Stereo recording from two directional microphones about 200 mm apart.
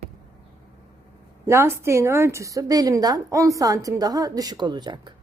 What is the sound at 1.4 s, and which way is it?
A woman's voice, 15° right (ahead or behind).